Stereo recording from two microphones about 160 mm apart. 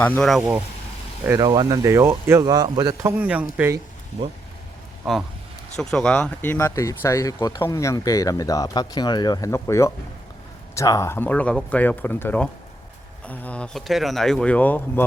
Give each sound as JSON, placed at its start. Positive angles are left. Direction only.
{"t": 0.0, "sound": "speech", "side_deg": 5}
{"t": 1.4, "sound": "a man's voice", "side_deg": -25}
{"t": 5.7, "sound": "speech", "side_deg": 5}